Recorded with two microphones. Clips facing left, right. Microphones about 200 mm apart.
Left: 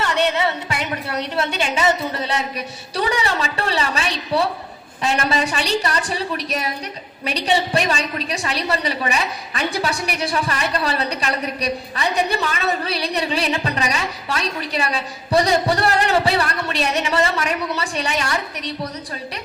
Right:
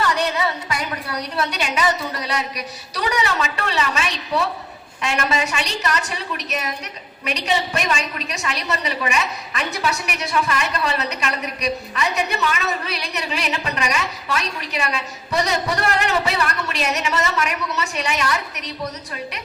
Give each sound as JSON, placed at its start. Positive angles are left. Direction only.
{"t": 0.0, "sound": "a woman's voice", "side_deg": 25}